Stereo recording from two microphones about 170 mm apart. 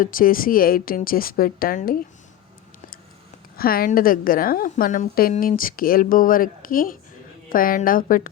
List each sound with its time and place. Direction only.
0.0 s speech: 55° left (ahead or behind)
3.6 s speech: 60° left (ahead or behind)